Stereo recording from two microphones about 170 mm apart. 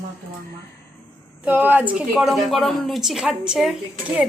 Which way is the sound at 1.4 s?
10° right (ahead or behind).